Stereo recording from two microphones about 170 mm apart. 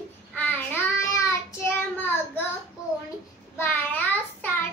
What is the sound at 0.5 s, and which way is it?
Child singing, 10° left (ahead or behind).